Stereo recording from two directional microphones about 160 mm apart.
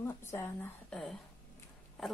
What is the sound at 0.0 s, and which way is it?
Speech, 15° left (ahead or behind).